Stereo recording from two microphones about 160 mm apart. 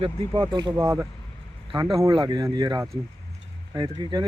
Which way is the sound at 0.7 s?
15° right (ahead or behind).